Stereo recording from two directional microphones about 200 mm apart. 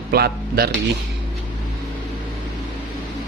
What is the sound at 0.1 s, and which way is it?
Speech, 50° right (ahead or behind).